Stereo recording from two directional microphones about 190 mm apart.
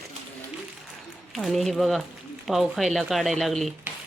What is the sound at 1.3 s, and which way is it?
Speech, centre (ahead or behind).